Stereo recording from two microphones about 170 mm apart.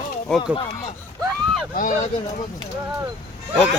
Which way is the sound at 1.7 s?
50° left (ahead or behind).